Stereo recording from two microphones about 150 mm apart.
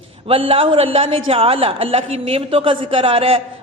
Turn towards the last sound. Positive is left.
turn(degrees=-40)  # may be behind; listen again after turning